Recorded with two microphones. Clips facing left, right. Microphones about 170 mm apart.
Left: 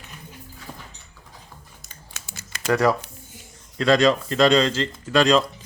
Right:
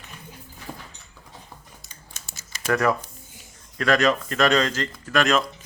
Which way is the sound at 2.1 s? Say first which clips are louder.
Left 5 dB; 60° left (ahead or behind).